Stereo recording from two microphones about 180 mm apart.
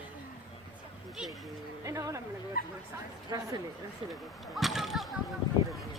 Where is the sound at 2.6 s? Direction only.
55° left (ahead or behind).